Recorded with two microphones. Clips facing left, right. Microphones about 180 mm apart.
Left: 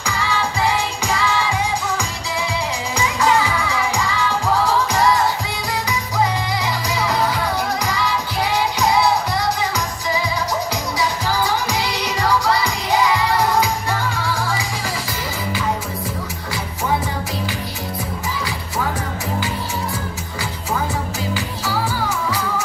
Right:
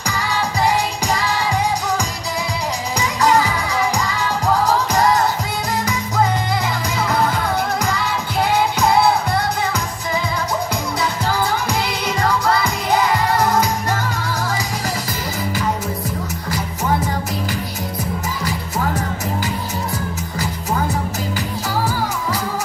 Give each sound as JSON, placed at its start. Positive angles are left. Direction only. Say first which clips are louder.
{"t": 0.0, "sound": "music", "louder": "even", "side_deg": -40}
{"t": 3.2, "sound": "music", "louder": "right 2 dB", "side_deg": -40}
{"t": 6.6, "sound": "music", "louder": "even", "side_deg": -50}
{"t": 11.7, "sound": "music", "louder": "right 1 dB", "side_deg": -55}